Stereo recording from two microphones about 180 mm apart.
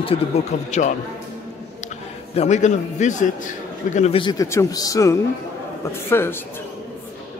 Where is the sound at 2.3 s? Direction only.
40° left (ahead or behind); by 6.4 s 15° left (ahead or behind).